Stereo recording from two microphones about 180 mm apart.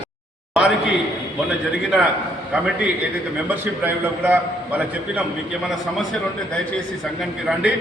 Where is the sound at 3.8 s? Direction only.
10° right (ahead or behind).